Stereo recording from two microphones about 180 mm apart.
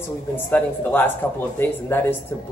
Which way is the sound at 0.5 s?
10° left (ahead or behind).